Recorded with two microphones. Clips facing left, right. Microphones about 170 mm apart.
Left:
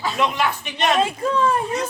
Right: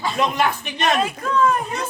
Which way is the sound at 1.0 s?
30° left (ahead or behind).